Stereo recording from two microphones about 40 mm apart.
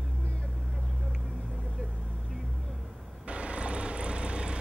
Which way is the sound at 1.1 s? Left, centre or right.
Centre.